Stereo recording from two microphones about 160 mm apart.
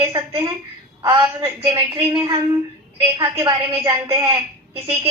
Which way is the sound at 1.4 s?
15° right (ahead or behind).